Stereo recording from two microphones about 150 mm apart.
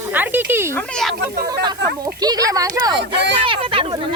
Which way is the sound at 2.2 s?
25° right (ahead or behind).